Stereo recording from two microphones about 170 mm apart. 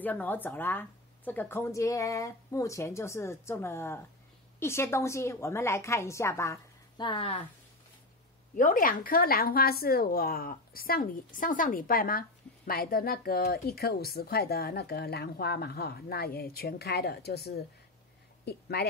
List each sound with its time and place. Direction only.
0.0 s speech: 10° left (ahead or behind)
7.1 s speech: 30° left (ahead or behind)
8.5 s a woman's voice: 50° left (ahead or behind); by 18.9 s 70° left (ahead or behind)